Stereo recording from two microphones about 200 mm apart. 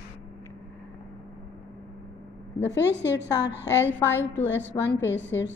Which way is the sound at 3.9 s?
10° left (ahead or behind).